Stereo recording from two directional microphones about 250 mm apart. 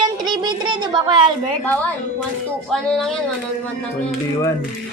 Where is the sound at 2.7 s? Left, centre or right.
Centre.